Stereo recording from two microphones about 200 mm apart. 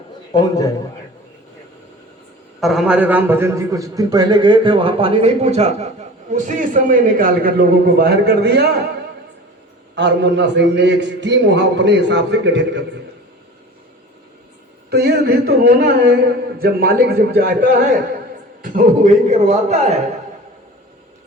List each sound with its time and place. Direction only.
0.3 s a man's voice: 20° left (ahead or behind)
2.6 s a man's voice: centre (ahead or behind); by 8.7 s 55° right (ahead or behind)
9.9 s a man's voice: 60° right (ahead or behind)
14.8 s a man's voice: 55° right (ahead or behind); by 19.9 s 35° right (ahead or behind)